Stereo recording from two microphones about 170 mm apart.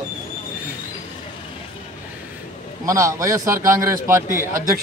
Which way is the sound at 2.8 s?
15° right (ahead or behind).